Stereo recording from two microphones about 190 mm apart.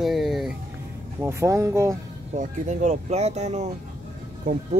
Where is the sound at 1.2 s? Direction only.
15° right (ahead or behind).